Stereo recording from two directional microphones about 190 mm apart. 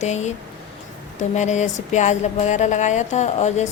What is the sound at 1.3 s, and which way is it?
Speech, 40° left (ahead or behind).